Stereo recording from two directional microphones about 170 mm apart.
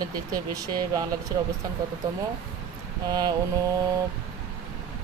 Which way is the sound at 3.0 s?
25° right (ahead or behind).